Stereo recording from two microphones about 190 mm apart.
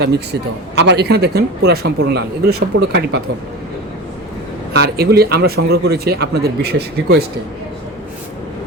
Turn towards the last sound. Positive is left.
turn(degrees=-55)  # may be behind; listen again after turning